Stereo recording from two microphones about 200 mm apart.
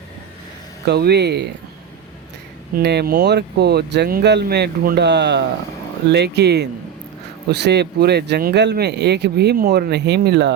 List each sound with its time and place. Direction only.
0.9 s speech: 55° right (ahead or behind)
2.7 s speech: 55° right (ahead or behind)